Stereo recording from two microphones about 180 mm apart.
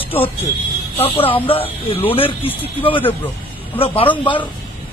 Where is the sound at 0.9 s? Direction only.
30° left (ahead or behind).